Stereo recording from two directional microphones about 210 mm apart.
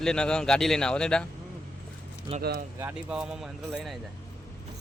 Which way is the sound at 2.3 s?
30° right (ahead or behind).